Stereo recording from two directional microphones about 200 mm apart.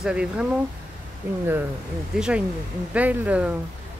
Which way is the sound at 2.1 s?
5° right (ahead or behind).